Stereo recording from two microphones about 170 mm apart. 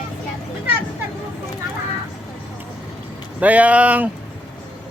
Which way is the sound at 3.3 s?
10° right (ahead or behind).